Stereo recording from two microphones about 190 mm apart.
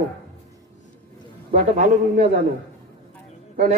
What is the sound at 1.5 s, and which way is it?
Speech, 40° right (ahead or behind).